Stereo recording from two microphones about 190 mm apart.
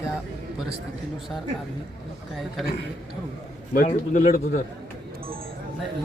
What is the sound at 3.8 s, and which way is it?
Speech, 40° left (ahead or behind).